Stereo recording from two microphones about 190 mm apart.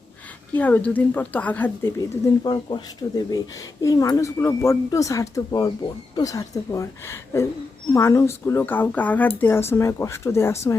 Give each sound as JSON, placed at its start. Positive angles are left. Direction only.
{"t": 0.5, "sound": "speech", "side_deg": 10}